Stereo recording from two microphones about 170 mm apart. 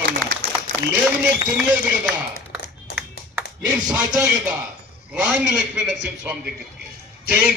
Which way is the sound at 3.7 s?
5° right (ahead or behind).